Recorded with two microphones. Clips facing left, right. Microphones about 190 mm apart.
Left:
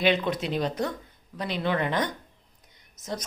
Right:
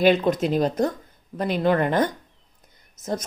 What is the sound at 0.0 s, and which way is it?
A woman's voice, 45° right (ahead or behind).